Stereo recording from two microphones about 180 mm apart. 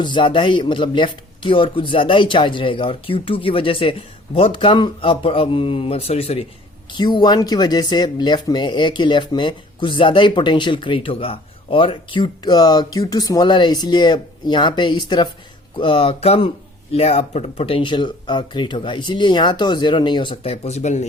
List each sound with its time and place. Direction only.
0.0 s speech: 25° left (ahead or behind)